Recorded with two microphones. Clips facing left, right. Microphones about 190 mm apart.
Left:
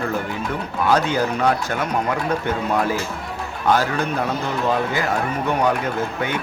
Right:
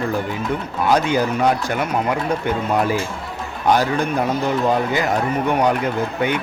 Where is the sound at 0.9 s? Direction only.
15° right (ahead or behind).